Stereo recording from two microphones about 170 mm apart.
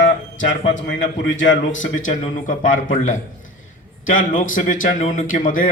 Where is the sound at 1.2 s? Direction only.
90° left.